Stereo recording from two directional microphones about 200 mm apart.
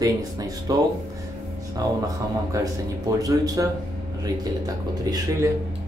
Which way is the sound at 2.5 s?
15° right (ahead or behind).